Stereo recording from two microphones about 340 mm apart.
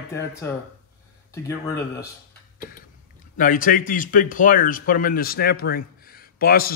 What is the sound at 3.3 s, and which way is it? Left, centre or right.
Speech, left.